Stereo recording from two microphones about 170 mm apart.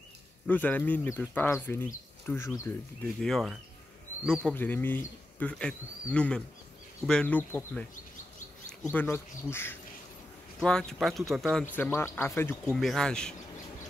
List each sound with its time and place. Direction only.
0.5 s speech: 10° left (ahead or behind)
3.2 s speech: centre (ahead or behind)
8.8 s speech: 15° left (ahead or behind)
11.7 s speech: 10° left (ahead or behind)
12.7 s speech: centre (ahead or behind)